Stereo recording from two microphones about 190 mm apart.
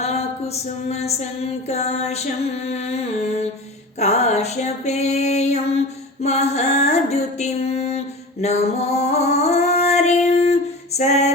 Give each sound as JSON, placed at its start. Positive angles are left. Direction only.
{"t": 0.0, "sound": "a sound", "side_deg": 35}
{"t": 0.9, "sound": "female singing", "side_deg": 35}
{"t": 6.2, "sound": "music", "side_deg": 35}